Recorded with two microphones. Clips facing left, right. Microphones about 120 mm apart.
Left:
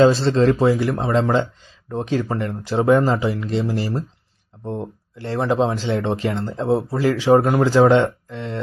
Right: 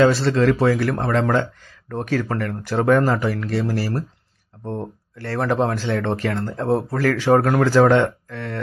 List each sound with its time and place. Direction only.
0.0 s speech: 25° left (ahead or behind)